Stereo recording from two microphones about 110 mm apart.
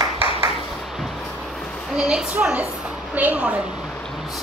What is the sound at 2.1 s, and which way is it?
A woman's voice, 5° right (ahead or behind).